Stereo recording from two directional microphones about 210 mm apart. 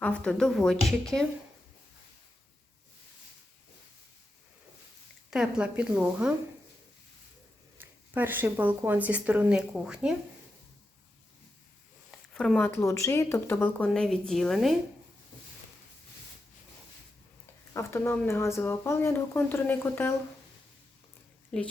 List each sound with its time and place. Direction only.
0.0 s speech: 5° left (ahead or behind)
5.3 s speech: 5° right (ahead or behind)
7.8 s speech: 10° right (ahead or behind)
12.3 s speech: 5° left (ahead or behind)
17.7 s speech: 10° left (ahead or behind)
21.5 s speech: 5° left (ahead or behind)